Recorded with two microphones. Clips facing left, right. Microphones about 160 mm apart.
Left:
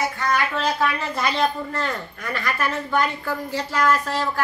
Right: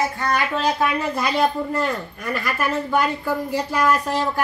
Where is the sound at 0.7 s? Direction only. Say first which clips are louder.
Right 2 dB; 15° right (ahead or behind).